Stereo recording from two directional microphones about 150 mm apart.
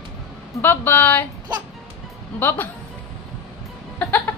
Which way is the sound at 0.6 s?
15° left (ahead or behind).